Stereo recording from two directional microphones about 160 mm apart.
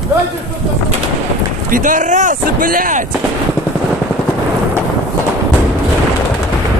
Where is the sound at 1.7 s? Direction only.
55° right (ahead or behind).